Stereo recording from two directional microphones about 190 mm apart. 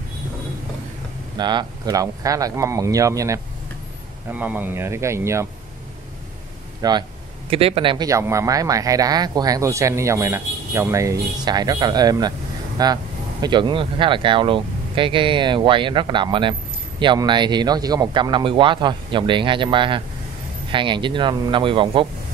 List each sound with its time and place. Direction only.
1.3 s speech: 25° right (ahead or behind)
6.8 s speech: 25° right (ahead or behind)